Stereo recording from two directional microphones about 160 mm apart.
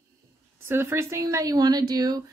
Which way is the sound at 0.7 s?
15° right (ahead or behind).